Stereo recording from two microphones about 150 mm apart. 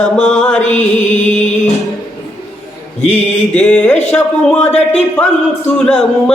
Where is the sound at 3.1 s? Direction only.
10° left (ahead or behind).